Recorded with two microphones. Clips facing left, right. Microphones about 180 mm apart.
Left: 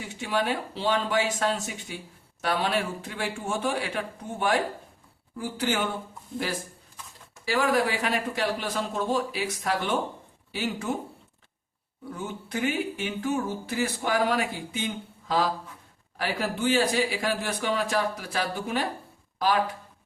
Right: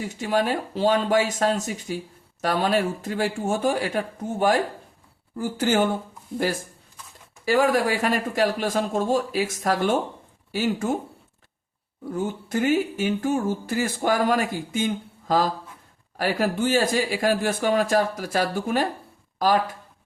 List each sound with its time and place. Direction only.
0.0 s speech: 40° right (ahead or behind)
7.4 s speech: 50° right (ahead or behind)
12.1 s speech: 45° right (ahead or behind)